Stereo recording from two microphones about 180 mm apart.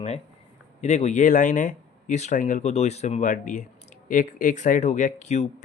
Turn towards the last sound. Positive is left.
turn(degrees=40)  # may be behind; listen again after turning